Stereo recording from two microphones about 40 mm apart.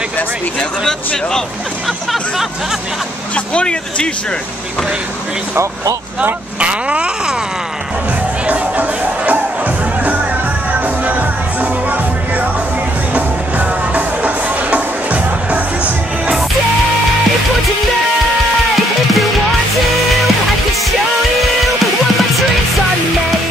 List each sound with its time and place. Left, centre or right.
3.3 s speech: left
6.6 s speech: right
8.5 s music: right
11.1 s music: right